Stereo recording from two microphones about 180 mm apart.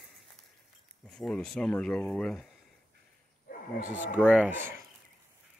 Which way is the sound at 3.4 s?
50° left (ahead or behind).